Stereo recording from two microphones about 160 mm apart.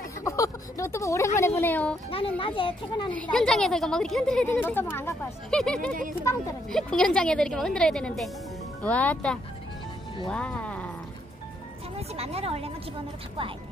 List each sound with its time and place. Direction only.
0.2 s speech: 20° left (ahead or behind)
2.0 s a child's voice: 35° left (ahead or behind)
3.1 s a woman's voice: 5° left (ahead or behind)
6.3 s a woman's voice: 20° left (ahead or behind)
6.7 s a woman's voice: 5° left (ahead or behind)
12.2 s a woman's voice: 40° right (ahead or behind)